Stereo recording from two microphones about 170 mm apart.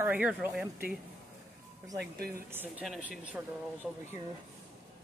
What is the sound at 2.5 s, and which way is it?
Speech, 10° right (ahead or behind).